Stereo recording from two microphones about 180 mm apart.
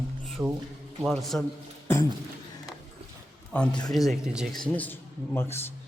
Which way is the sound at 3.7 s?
25° left (ahead or behind).